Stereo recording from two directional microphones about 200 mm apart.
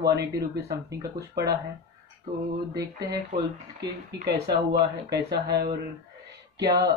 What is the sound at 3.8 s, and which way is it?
Speech, 55° right (ahead or behind).